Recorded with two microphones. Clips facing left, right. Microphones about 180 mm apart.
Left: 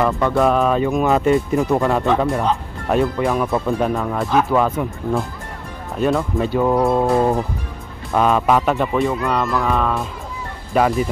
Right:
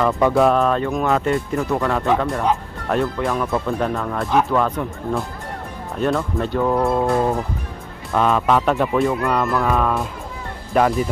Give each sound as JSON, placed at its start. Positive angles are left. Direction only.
{"t": 0.3, "sound": "speech", "side_deg": 0}
{"t": 6.7, "sound": "speech", "side_deg": 15}
{"t": 8.1, "sound": "speech", "side_deg": 5}